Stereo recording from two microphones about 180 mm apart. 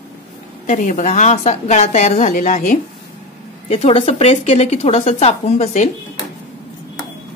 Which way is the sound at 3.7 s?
35° left (ahead or behind).